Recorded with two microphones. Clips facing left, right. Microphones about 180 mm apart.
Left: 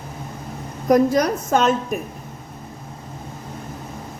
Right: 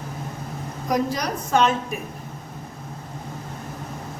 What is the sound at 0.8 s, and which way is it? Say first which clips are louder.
A woman's voice: left 8 dB; 50° left (ahead or behind).